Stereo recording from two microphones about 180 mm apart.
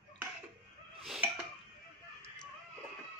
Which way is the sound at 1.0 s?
Centre (ahead or behind).